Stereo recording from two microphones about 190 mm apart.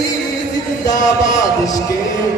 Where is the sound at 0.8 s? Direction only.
40° left (ahead or behind).